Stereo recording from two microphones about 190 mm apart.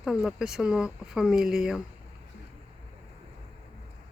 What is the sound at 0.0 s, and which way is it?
Speech, 5° right (ahead or behind).